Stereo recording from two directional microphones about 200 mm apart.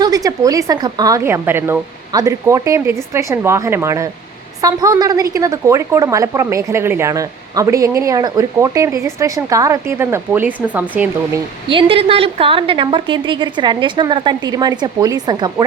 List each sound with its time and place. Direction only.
0.0 s a woman's voice: 20° right (ahead or behind)
11.7 s a woman's voice: 25° right (ahead or behind)